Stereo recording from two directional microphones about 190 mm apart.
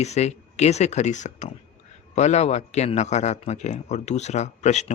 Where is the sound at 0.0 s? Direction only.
35° left (ahead or behind).